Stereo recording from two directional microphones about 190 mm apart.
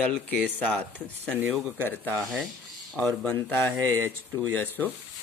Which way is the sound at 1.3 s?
5° right (ahead or behind).